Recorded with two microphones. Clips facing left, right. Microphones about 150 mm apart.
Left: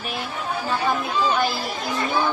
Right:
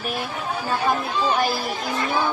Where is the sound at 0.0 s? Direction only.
45° right (ahead or behind).